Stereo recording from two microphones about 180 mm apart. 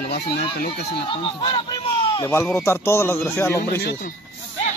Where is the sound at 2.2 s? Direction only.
15° left (ahead or behind).